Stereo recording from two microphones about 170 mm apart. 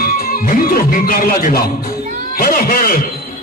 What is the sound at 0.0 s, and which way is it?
A man's voice, 55° left (ahead or behind).